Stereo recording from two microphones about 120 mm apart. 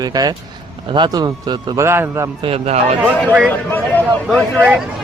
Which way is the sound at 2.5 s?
65° right (ahead or behind).